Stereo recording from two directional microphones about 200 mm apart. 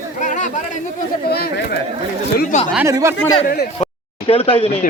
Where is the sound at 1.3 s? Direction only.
50° left (ahead or behind).